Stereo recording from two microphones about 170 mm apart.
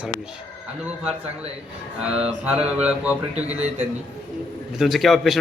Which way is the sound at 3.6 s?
40° right (ahead or behind).